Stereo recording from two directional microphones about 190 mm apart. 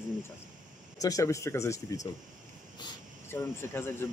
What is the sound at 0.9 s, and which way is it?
Speech, 20° left (ahead or behind).